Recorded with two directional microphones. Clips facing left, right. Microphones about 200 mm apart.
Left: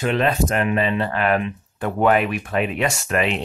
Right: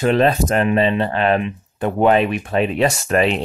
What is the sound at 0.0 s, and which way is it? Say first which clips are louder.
Speech: right 4 dB; 35° right (ahead or behind).